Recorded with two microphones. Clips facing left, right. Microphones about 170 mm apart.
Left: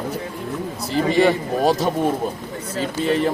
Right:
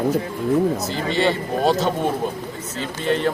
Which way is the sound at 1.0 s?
10° left (ahead or behind).